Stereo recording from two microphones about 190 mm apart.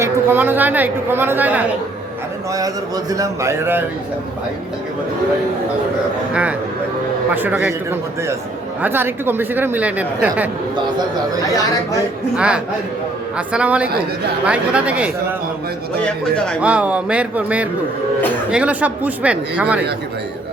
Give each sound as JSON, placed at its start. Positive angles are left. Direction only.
{"t": 0.0, "sound": "speech", "side_deg": -10}
{"t": 3.1, "sound": "speech", "side_deg": -15}
{"t": 7.3, "sound": "speech", "side_deg": -10}
{"t": 12.4, "sound": "speech", "side_deg": -5}
{"t": 16.0, "sound": "speech", "side_deg": 5}
{"t": 16.6, "sound": "speech", "side_deg": -5}